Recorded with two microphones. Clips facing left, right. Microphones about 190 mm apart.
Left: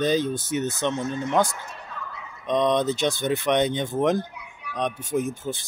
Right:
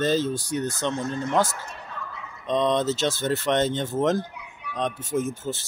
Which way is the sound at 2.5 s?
15° left (ahead or behind).